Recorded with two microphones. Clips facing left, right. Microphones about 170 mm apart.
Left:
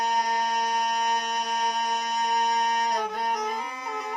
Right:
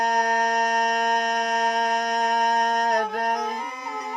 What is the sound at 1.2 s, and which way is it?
Music, 90° right.